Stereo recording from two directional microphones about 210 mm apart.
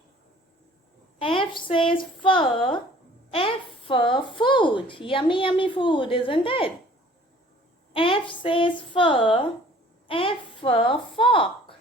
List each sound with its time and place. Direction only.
1.2 s speech: 25° left (ahead or behind)
7.9 s a woman's voice: 25° left (ahead or behind)